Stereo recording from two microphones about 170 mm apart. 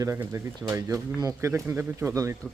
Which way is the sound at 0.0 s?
20° right (ahead or behind).